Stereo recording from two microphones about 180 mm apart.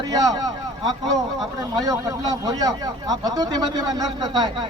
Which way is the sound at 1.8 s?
20° right (ahead or behind).